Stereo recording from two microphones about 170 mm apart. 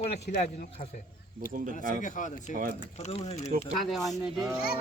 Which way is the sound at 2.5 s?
55° right (ahead or behind).